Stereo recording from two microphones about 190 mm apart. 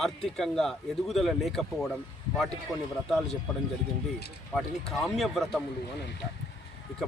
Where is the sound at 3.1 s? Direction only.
Centre (ahead or behind).